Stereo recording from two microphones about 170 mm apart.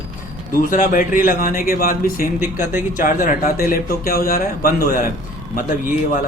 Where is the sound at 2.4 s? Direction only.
15° right (ahead or behind).